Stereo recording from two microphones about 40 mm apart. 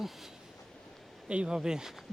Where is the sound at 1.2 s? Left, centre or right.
Right.